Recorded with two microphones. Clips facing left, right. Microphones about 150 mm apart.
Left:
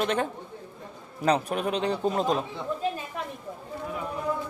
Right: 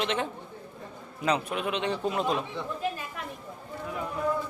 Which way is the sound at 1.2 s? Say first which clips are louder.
Left 3 dB; 40° left (ahead or behind).